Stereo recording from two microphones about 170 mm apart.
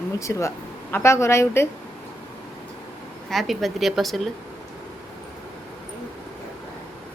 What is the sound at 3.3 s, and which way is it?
A woman's voice, centre (ahead or behind).